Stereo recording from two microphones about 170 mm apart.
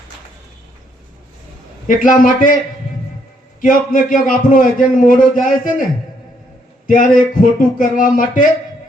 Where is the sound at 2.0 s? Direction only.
50° left (ahead or behind).